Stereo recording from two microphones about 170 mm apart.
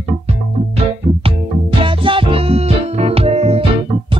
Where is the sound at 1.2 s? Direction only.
30° right (ahead or behind).